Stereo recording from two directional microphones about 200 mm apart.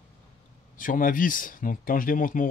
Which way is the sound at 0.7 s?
40° left (ahead or behind).